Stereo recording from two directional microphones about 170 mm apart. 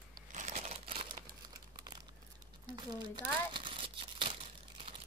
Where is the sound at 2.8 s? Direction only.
25° right (ahead or behind).